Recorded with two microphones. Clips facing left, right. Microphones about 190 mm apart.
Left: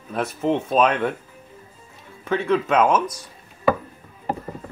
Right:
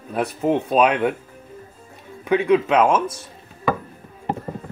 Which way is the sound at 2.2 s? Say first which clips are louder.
Right 4 dB; 15° right (ahead or behind).